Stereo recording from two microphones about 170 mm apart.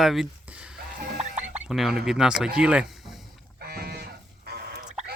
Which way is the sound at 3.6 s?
65° right (ahead or behind).